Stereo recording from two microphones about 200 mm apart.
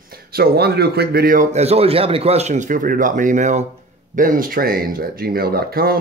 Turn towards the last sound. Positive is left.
turn(degrees=-50)  # may be behind; listen again after turning